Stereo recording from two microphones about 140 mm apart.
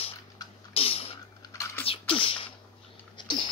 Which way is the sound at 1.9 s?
40° left (ahead or behind).